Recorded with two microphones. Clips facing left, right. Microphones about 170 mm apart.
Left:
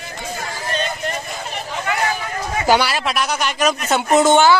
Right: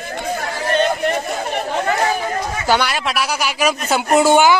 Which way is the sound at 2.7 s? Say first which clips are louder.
Left 1 dB; 5° left (ahead or behind).